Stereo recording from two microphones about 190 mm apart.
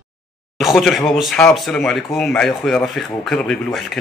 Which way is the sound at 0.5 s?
Centre (ahead or behind).